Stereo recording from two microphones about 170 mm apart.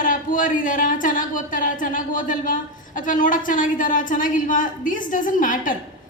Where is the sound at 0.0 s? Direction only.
50° left (ahead or behind).